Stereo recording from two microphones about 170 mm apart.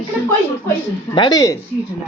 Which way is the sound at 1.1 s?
25° left (ahead or behind).